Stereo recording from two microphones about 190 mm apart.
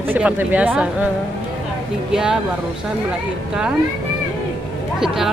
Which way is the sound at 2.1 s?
5° right (ahead or behind).